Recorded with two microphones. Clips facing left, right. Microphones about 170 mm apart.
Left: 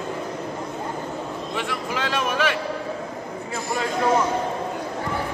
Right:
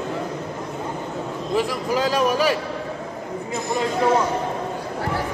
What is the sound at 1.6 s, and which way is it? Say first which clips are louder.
A man's voice: right 7 dB; 40° right (ahead or behind).